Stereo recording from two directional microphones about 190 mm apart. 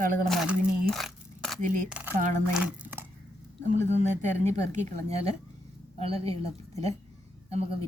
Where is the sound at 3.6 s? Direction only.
40° right (ahead or behind).